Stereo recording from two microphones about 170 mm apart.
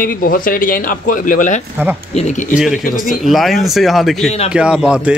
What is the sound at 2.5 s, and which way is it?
Speech, 5° right (ahead or behind).